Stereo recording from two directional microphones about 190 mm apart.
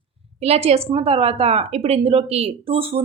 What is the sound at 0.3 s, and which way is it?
A woman's voice, 35° right (ahead or behind).